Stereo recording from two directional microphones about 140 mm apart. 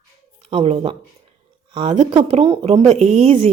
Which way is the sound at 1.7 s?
60° right (ahead or behind).